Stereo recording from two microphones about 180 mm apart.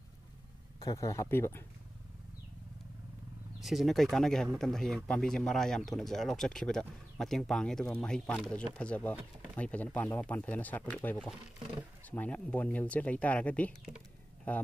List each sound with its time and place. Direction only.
0.7 s speech: 20° left (ahead or behind)
3.6 s speech: centre (ahead or behind)